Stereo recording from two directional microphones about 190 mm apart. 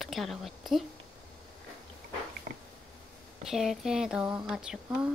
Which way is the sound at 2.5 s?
40° right (ahead or behind).